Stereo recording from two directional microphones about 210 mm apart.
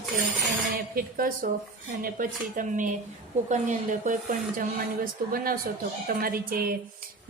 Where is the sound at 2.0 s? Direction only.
40° right (ahead or behind).